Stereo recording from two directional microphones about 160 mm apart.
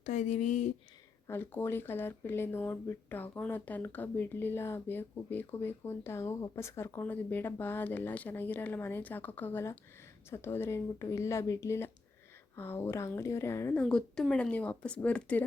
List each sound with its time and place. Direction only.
0.0 s speech: 50° left (ahead or behind)
1.3 s speech: 15° left (ahead or behind)
13.8 s speech: 5° left (ahead or behind)